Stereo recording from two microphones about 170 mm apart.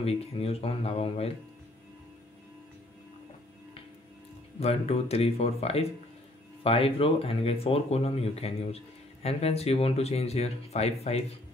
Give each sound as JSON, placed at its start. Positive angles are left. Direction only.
{"t": 0.0, "sound": "speech", "side_deg": 35}
{"t": 4.6, "sound": "speech", "side_deg": 35}